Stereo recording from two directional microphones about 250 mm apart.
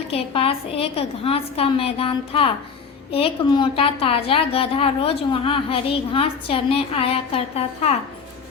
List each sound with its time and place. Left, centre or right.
0.1 s a woman's voice: left